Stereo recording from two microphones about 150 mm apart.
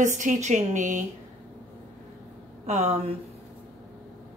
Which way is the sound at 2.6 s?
50° right (ahead or behind).